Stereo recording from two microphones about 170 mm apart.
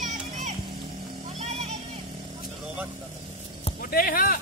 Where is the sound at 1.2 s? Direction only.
40° right (ahead or behind).